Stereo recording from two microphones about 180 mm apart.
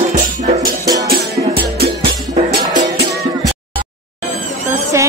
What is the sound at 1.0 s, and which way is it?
Music, 60° right (ahead or behind).